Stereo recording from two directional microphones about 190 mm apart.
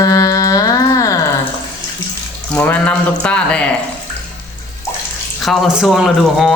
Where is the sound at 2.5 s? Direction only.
10° left (ahead or behind).